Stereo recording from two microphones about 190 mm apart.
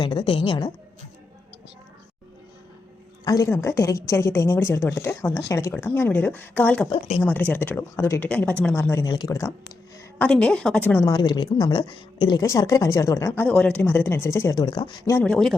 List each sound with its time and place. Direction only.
0.0 s a woman's voice: 25° left (ahead or behind)
3.2 s a woman's voice: 15° left (ahead or behind)
10.2 s a woman's voice: 5° left (ahead or behind)